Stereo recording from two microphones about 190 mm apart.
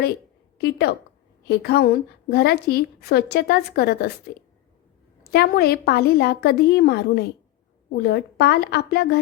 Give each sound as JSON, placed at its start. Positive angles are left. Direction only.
{"t": 0.6, "sound": "a woman's voice", "side_deg": 60}
{"t": 5.3, "sound": "a woman's voice", "side_deg": 55}